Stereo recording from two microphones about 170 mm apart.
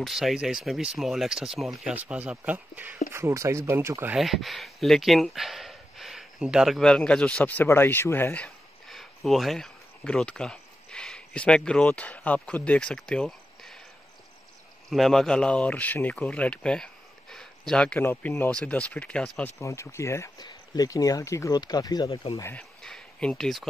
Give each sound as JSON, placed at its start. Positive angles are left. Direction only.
{"t": 0.0, "sound": "speech", "side_deg": 0}
{"t": 4.2, "sound": "speech", "side_deg": 0}
{"t": 14.9, "sound": "speech", "side_deg": 0}
{"t": 19.6, "sound": "speech", "side_deg": 15}
{"t": 22.4, "sound": "speech", "side_deg": 10}